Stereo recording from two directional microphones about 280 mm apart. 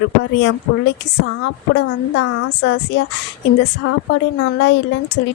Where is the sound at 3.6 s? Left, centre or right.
Left.